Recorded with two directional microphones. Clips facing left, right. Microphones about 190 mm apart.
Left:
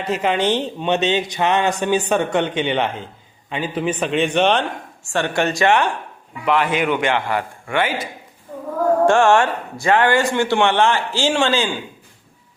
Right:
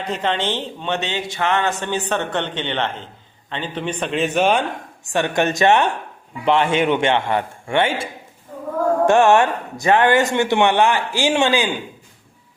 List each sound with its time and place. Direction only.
0.0 s speech: 5° left (ahead or behind)
5.0 s speech: 20° right (ahead or behind)
9.0 s speech: 20° right (ahead or behind)